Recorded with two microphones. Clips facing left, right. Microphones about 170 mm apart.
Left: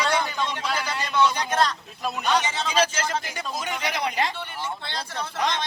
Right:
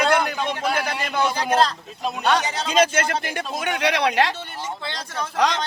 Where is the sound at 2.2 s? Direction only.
70° right (ahead or behind).